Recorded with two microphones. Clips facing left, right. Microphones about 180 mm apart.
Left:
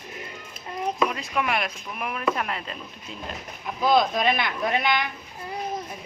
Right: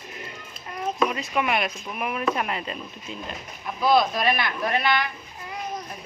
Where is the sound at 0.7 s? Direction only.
20° left (ahead or behind).